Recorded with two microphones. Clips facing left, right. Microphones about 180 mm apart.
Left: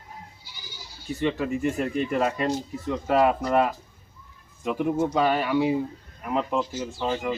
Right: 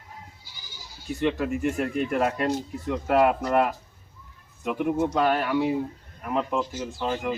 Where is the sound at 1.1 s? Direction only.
Centre (ahead or behind).